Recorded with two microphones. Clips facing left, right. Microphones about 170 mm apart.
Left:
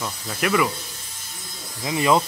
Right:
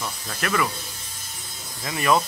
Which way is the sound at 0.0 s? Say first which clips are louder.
Left 4 dB; 15° left (ahead or behind).